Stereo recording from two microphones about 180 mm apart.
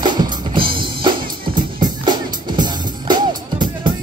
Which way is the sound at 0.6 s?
30° right (ahead or behind).